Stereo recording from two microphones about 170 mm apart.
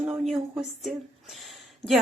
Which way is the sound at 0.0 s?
Centre (ahead or behind).